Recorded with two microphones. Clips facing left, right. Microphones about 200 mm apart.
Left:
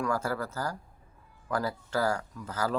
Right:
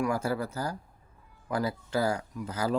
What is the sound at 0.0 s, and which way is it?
Speech, 15° right (ahead or behind).